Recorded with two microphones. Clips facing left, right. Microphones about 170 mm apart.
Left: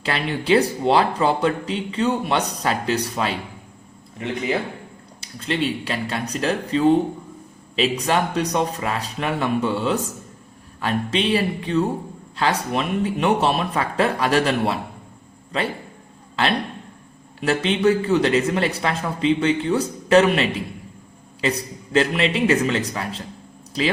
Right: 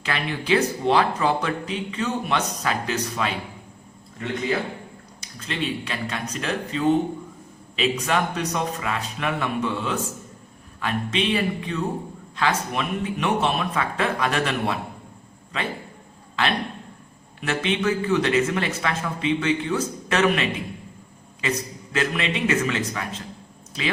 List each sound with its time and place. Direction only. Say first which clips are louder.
0.0 s speech: left 3 dB; 30° left (ahead or behind)
5.2 s speech: left 5 dB; 30° left (ahead or behind)
16.3 s speech: left 3 dB; 30° left (ahead or behind)
21.9 s speech: left 6 dB; 35° left (ahead or behind)